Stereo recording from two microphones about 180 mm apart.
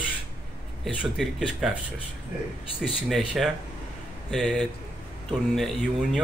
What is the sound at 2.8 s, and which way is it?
A man's voice, centre (ahead or behind).